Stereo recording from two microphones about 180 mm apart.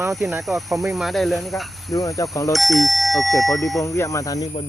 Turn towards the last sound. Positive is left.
turn(degrees=20)  # may be behind; listen again after turning